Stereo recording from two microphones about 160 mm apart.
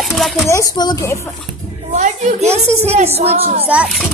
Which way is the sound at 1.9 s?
45° right (ahead or behind).